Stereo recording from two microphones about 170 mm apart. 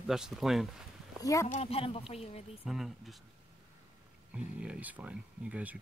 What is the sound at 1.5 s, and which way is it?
Speech, 35° left (ahead or behind).